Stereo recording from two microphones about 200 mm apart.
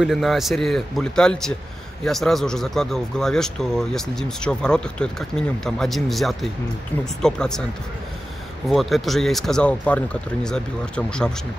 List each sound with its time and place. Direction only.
0.0 s speech: centre (ahead or behind)
8.6 s speech: centre (ahead or behind)